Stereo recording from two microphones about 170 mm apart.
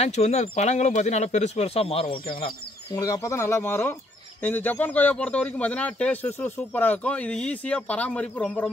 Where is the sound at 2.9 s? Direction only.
20° left (ahead or behind).